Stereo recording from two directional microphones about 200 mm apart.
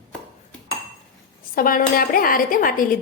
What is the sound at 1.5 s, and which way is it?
Speech, 45° left (ahead or behind).